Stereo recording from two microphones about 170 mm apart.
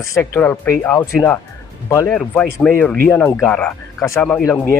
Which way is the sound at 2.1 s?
5° left (ahead or behind).